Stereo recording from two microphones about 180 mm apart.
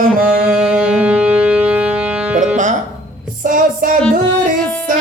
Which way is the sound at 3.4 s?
50° right (ahead or behind).